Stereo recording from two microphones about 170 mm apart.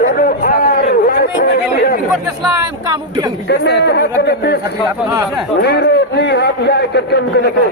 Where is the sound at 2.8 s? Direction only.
25° right (ahead or behind).